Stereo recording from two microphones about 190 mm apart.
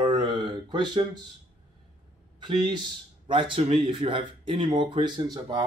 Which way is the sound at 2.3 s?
25° right (ahead or behind).